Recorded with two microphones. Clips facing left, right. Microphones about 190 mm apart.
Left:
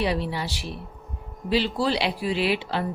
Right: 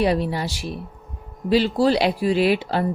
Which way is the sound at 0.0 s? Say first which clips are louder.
Right 5 dB; 45° right (ahead or behind).